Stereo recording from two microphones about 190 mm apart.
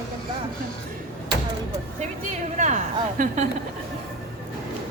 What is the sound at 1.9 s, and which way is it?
A woman's voice, 40° right (ahead or behind).